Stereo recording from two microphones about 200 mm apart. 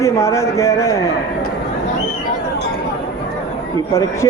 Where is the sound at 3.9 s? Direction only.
15° left (ahead or behind).